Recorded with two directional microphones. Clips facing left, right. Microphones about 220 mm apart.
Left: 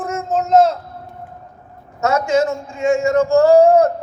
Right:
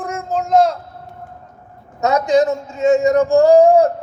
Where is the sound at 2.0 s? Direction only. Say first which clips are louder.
Right 2 dB; 15° right (ahead or behind).